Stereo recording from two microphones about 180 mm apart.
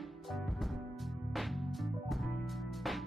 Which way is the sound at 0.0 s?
Centre (ahead or behind).